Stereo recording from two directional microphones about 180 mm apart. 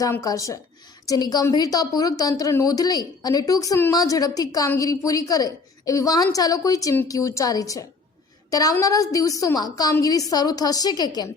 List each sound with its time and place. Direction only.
0.0 s a woman's voice: 20° left (ahead or behind)